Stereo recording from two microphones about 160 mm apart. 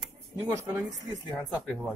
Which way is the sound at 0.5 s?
15° right (ahead or behind).